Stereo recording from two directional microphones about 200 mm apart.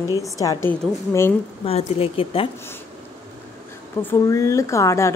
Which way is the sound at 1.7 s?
30° left (ahead or behind).